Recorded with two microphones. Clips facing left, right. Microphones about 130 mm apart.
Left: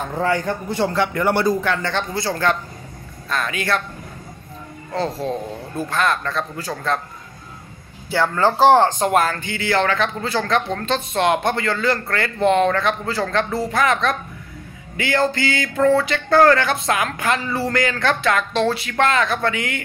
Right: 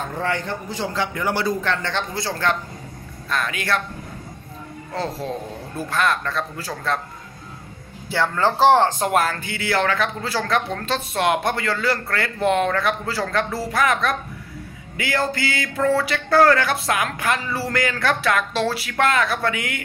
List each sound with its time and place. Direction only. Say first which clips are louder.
0.7 s a man's voice: left 6 dB; 60° left (ahead or behind)
1.6 s speech: left 2 dB; 5° left (ahead or behind)
4.9 s speech: left 4 dB; centre (ahead or behind)
8.1 s speech: left 2 dB; centre (ahead or behind)